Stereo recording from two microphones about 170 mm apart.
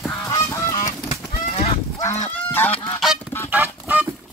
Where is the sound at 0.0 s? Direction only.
15° left (ahead or behind).